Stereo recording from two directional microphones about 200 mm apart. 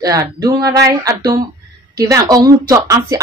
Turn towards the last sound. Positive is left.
turn(degrees=-15)  # may be behind; listen again after turning